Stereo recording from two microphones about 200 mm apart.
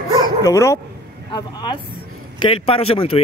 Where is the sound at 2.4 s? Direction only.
30° left (ahead or behind).